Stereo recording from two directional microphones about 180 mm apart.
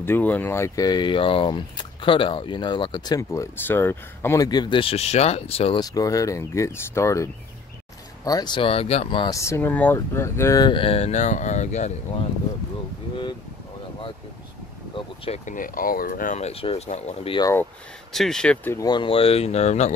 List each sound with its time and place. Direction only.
0.0 s speech: 10° left (ahead or behind); by 5.8 s 35° left (ahead or behind)
5.8 s speech: 20° left (ahead or behind); by 11.9 s 40° left (ahead or behind)
15.2 s speech: 40° left (ahead or behind)
18.1 s speech: centre (ahead or behind)
18.9 s speech: 30° left (ahead or behind)